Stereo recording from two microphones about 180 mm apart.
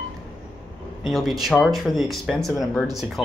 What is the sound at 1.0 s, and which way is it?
Speech, centre (ahead or behind).